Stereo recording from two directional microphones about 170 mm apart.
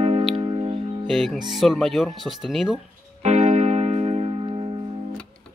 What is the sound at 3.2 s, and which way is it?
Music, 40° right (ahead or behind).